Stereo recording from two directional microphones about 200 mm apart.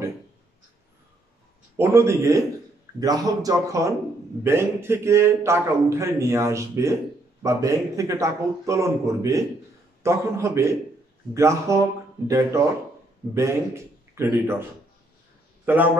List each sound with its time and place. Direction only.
1.8 s a man's voice: 15° right (ahead or behind)
15.6 s a man's voice: 10° right (ahead or behind)